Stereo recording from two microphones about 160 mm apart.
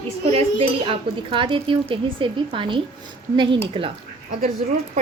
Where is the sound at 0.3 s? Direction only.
40° right (ahead or behind).